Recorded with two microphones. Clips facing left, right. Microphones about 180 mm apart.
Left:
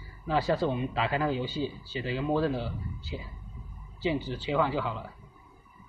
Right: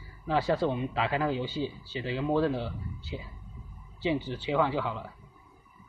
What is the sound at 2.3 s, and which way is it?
Speech, 5° left (ahead or behind).